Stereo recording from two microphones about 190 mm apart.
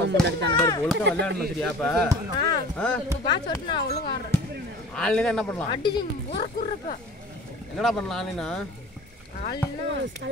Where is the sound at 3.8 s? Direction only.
55° left (ahead or behind).